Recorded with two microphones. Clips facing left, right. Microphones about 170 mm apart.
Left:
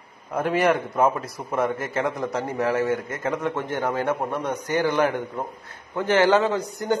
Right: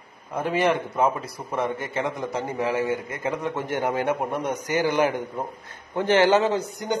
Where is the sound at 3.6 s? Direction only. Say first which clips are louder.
Even; 20° right (ahead or behind).